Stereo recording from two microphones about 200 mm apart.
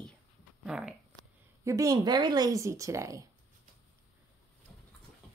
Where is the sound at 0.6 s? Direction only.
5° right (ahead or behind).